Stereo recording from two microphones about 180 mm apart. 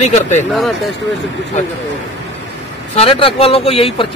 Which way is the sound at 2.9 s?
30° left (ahead or behind).